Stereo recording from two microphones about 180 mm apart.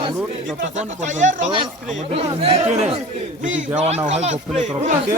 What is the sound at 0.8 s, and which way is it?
Speech, 40° right (ahead or behind).